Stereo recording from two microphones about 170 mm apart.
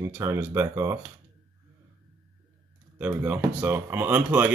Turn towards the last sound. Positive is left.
turn(degrees=-10)  # may be behind; listen again after turning